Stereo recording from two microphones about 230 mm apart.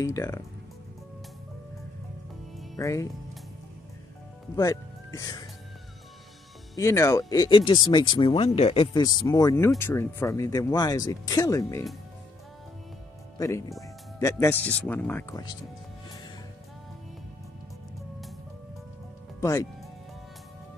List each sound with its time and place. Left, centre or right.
0.0 s speech: centre
2.8 s speech: centre
4.6 s speech: centre
6.8 s speech: centre
13.4 s speech: centre
19.4 s speech: centre